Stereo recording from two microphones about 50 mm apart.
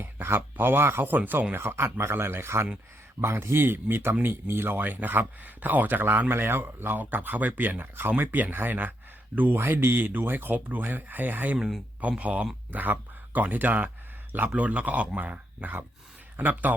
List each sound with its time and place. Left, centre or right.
0.0 s speech: right
1.5 s speech: right
14.5 s speech: right